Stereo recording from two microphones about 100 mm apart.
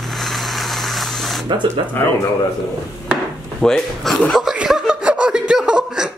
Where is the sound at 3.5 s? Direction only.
5° left (ahead or behind).